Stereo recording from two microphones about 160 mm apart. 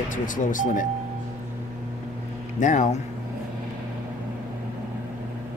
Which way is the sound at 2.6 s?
50° left (ahead or behind).